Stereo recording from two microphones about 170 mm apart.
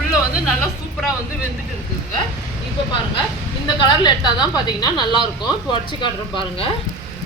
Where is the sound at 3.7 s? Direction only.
25° left (ahead or behind).